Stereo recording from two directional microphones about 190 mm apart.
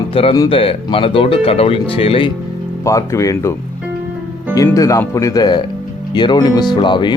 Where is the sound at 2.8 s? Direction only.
15° left (ahead or behind).